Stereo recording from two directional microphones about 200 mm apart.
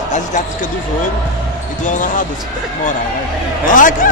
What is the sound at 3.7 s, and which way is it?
Speech, 40° left (ahead or behind).